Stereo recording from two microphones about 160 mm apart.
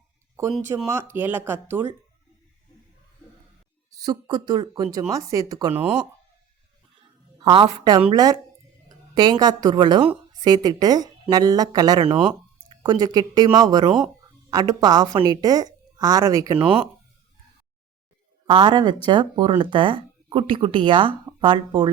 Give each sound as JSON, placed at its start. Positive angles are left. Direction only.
{"t": 0.7, "sound": "a woman's voice", "side_deg": -25}
{"t": 1.1, "sound": "speech", "side_deg": -10}
{"t": 4.0, "sound": "a woman's voice", "side_deg": -30}
{"t": 7.3, "sound": "a woman's voice", "side_deg": -35}
{"t": 16.6, "sound": "speech", "side_deg": -5}
{"t": 18.4, "sound": "a woman's voice", "side_deg": -30}